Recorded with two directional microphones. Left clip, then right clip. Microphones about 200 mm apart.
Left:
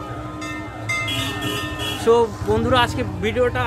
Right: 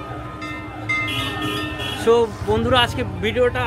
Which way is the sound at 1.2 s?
60° left (ahead or behind).